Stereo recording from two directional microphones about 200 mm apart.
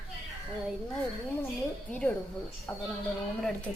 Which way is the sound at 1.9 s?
5° left (ahead or behind).